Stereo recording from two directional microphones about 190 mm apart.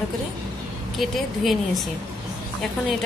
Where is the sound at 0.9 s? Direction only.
Centre (ahead or behind).